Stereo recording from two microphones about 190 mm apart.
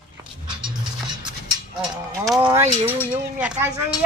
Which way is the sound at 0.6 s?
25° right (ahead or behind).